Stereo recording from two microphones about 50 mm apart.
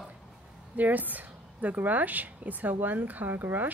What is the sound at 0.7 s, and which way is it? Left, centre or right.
A woman's voice, right.